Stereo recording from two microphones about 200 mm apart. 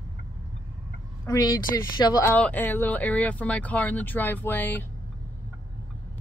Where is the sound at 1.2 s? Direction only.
15° left (ahead or behind).